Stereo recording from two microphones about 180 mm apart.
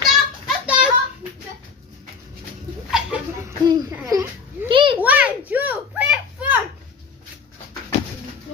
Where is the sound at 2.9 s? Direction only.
5° right (ahead or behind).